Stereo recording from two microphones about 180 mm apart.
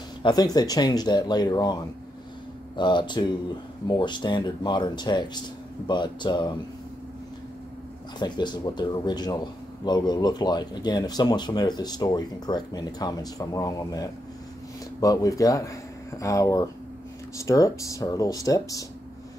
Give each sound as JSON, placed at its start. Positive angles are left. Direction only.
{"t": 0.2, "sound": "speech", "side_deg": 20}
{"t": 8.2, "sound": "speech", "side_deg": 25}